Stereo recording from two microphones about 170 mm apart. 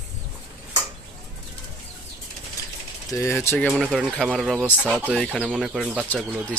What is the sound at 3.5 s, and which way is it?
Speech, 5° left (ahead or behind).